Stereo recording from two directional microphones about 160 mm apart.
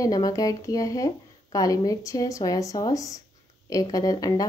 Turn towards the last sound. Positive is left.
turn(degrees=25)  # may be behind; listen again after turning